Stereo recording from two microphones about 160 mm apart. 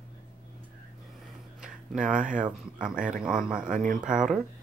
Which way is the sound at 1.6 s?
5° right (ahead or behind).